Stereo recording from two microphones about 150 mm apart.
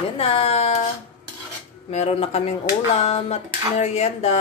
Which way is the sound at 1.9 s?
45° left (ahead or behind).